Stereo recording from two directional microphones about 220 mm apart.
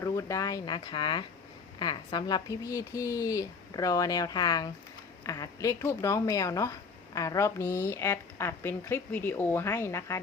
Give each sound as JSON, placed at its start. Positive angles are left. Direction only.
{"t": 0.0, "sound": "speech", "side_deg": 15}